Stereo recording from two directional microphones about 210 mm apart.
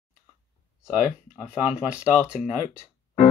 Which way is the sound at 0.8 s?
5° right (ahead or behind).